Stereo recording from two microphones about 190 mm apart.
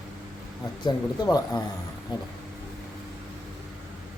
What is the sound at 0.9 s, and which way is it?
Speech, 20° left (ahead or behind).